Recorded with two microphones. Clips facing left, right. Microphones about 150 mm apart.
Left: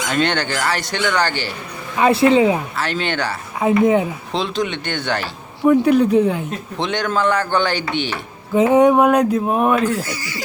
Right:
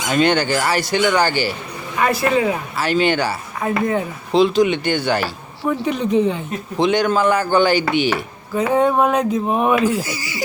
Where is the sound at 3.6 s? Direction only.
15° left (ahead or behind).